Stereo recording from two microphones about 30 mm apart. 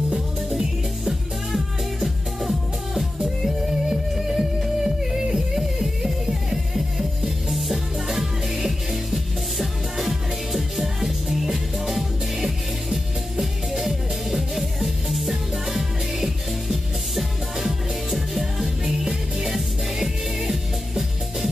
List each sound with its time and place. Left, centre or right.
0.1 s music: centre